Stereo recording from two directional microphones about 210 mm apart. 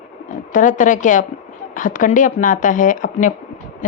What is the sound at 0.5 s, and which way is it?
A woman's voice, 40° left (ahead or behind).